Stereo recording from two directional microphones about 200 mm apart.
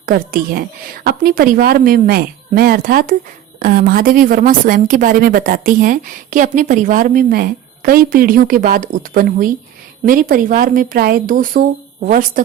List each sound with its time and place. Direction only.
0.0 s a woman's voice: 45° right (ahead or behind)